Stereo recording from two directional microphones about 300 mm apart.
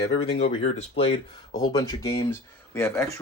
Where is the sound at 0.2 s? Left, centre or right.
Centre.